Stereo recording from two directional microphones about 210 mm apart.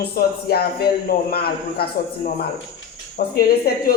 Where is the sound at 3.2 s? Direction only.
45° left (ahead or behind).